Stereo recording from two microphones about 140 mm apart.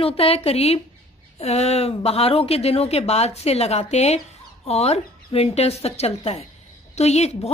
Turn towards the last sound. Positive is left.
turn(degrees=50)  # may be behind; listen again after turning